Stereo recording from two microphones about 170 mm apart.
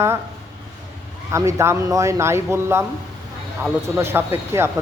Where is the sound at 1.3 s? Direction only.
15° right (ahead or behind).